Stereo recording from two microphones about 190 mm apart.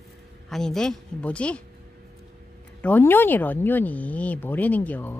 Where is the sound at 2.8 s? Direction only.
10° left (ahead or behind).